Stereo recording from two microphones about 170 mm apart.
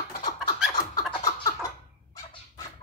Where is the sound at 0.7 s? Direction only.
25° left (ahead or behind).